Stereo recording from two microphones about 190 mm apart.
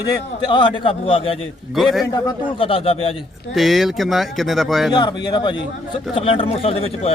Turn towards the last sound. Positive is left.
turn(degrees=30)  # may be behind; listen again after turning